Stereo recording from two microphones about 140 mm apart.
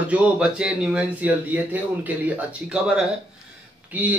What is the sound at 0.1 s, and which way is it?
A man's voice, 5° right (ahead or behind).